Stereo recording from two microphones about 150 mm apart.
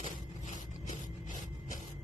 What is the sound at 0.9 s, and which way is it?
Rub, 55° left (ahead or behind).